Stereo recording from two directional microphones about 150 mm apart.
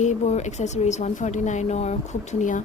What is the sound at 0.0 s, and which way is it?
Speech, 50° left (ahead or behind).